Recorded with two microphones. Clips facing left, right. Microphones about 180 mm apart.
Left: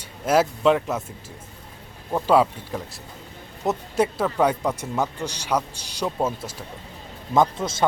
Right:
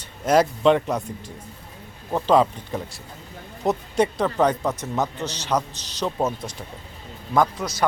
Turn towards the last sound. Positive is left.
turn(degrees=25)  # may be behind; listen again after turning